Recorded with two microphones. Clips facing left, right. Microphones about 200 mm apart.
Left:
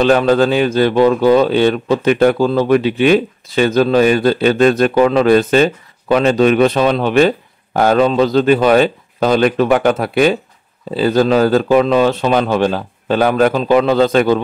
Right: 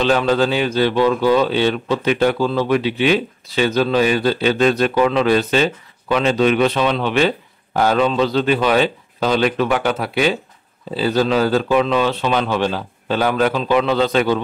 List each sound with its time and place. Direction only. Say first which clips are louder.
0.0 s a man's voice: left 5 dB; 50° left (ahead or behind)